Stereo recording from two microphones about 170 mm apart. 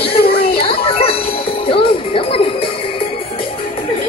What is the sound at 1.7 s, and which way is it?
Music, 30° left (ahead or behind).